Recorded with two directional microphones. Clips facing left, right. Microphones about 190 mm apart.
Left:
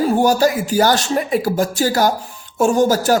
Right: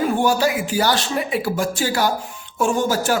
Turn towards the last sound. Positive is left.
turn(degrees=40)  # may be behind; listen again after turning